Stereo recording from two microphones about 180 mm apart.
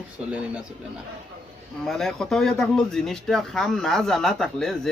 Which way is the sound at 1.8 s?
Centre (ahead or behind).